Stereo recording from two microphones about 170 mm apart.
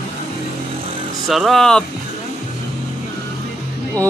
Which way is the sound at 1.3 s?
Centre (ahead or behind).